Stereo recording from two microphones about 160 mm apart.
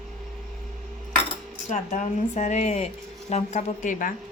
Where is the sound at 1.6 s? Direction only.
45° left (ahead or behind).